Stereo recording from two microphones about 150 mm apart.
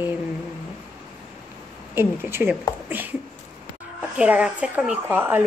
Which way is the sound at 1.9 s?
15° right (ahead or behind).